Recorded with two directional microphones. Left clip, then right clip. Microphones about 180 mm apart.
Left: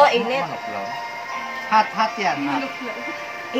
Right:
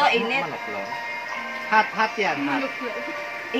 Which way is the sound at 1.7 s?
25° left (ahead or behind).